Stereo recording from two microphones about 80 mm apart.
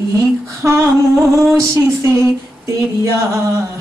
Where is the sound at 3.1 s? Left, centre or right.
Right.